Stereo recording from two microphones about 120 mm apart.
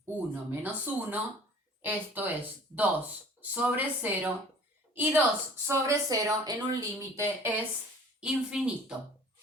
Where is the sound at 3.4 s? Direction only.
15° right (ahead or behind).